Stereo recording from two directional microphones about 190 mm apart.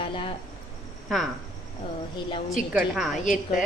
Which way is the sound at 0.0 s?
25° left (ahead or behind).